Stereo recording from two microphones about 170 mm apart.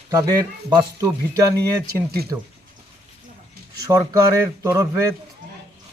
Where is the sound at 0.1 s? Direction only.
20° right (ahead or behind).